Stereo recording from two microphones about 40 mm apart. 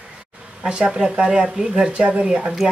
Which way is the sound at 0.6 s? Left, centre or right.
Right.